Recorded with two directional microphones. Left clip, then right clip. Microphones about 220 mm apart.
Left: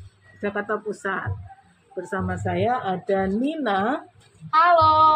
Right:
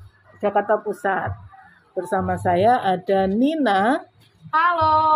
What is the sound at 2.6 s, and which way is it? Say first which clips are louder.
A woman's voice: right 5 dB; 40° right (ahead or behind).